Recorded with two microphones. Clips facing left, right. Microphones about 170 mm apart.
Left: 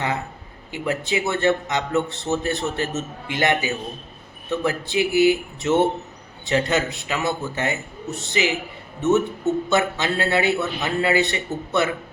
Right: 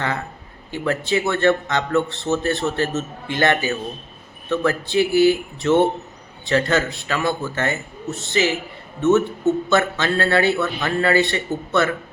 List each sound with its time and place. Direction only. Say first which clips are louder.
0.7 s a man's voice: right 3 dB; 15° left (ahead or behind)